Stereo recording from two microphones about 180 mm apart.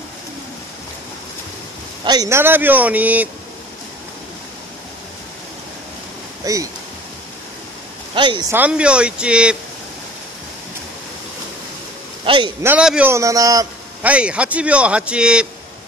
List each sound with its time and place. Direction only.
2.0 s speech: 20° right (ahead or behind)
6.4 s speech: 20° right (ahead or behind)
8.1 s speech: 25° right (ahead or behind)
8.5 s speech: 10° right (ahead or behind)
12.3 s a man's voice: 25° right (ahead or behind)
12.6 s speech: 5° right (ahead or behind)
14.0 s speech: 5° right (ahead or behind)